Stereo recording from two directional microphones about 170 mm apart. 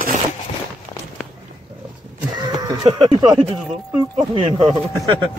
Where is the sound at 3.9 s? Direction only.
30° right (ahead or behind).